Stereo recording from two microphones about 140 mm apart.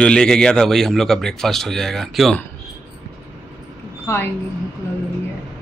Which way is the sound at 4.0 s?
15° left (ahead or behind).